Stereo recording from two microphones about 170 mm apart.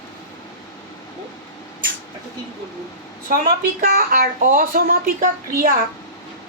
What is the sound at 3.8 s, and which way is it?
Speech, 55° right (ahead or behind).